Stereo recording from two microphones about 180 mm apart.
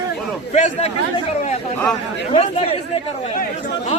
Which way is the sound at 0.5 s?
40° left (ahead or behind).